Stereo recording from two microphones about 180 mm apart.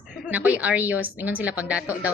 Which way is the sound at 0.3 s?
10° right (ahead or behind).